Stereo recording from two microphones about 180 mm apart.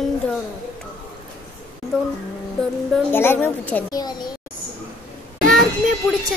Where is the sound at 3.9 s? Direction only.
20° left (ahead or behind).